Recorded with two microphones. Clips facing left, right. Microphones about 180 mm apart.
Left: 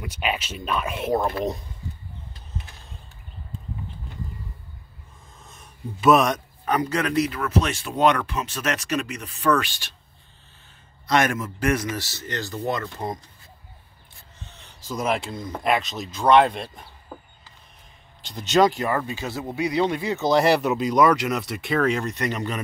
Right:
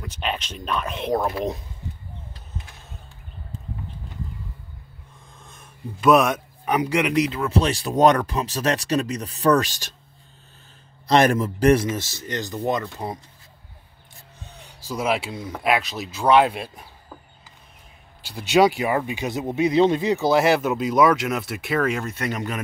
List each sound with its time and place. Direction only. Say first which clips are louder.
0.0 s speech: left 1 dB; 10° left (ahead or behind)
5.4 s a man's voice: even; centre (ahead or behind); by 9.8 s 40° right (ahead or behind)
11.1 s a man's voice: right 4 dB; 35° right (ahead or behind)
12.0 s speech: right 2 dB; 15° right (ahead or behind)
14.5 s speech: right 1 dB; 10° right (ahead or behind)
18.2 s speech: right 1 dB; 10° right (ahead or behind)
20.2 s speech: left 1 dB; centre (ahead or behind)